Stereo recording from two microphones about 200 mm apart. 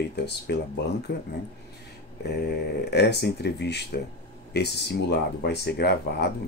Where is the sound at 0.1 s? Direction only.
55° left (ahead or behind).